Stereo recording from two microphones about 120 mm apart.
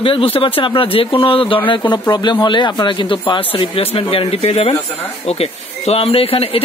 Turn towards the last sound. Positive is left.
turn(degrees=55)  # may be behind; listen again after turning